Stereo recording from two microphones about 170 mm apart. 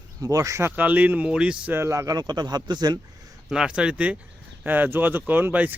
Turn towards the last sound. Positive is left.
turn(degrees=-10)  # may be behind; listen again after turning